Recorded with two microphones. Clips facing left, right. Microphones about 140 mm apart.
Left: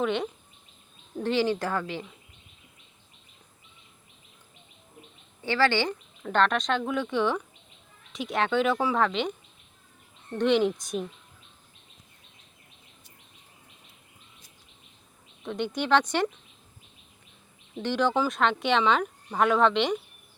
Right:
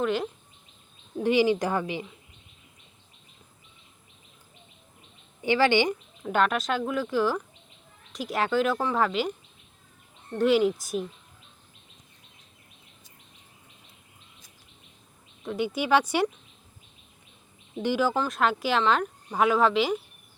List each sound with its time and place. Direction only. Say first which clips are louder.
0.0 s speech: right 1 dB; centre (ahead or behind)
1.2 s speech: right 3 dB; 15° right (ahead or behind)
5.4 s speech: right 3 dB; 15° right (ahead or behind)
10.3 s speech: right 1 dB; 5° right (ahead or behind)
15.4 s speech: right 1 dB; 5° right (ahead or behind)
17.8 s speech: even; 5° right (ahead or behind)